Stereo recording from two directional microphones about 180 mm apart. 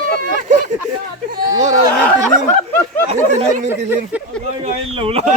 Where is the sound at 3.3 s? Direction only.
40° right (ahead or behind).